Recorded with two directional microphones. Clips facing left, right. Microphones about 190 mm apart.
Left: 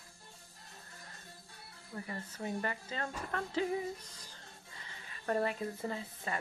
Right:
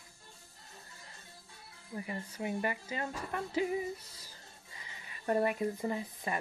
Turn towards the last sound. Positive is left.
turn(degrees=-15)  # may be behind; listen again after turning